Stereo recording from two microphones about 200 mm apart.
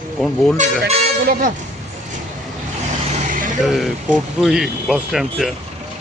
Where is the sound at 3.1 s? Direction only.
40° right (ahead or behind).